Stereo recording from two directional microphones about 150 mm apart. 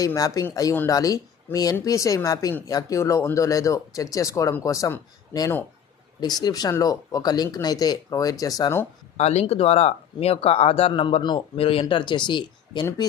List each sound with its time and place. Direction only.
0.0 s speech: 20° left (ahead or behind)
9.1 s speech: 45° left (ahead or behind); by 13.1 s 30° left (ahead or behind)